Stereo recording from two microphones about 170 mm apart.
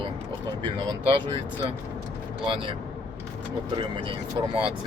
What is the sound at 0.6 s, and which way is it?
Speech, 30° right (ahead or behind).